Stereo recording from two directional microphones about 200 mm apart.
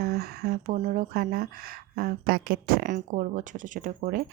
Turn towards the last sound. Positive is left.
turn(degrees=-45)  # may be behind; listen again after turning